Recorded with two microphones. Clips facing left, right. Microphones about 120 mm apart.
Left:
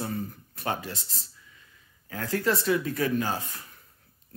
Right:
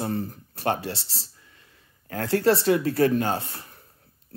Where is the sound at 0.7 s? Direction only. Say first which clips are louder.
Right 5 dB; 75° right (ahead or behind).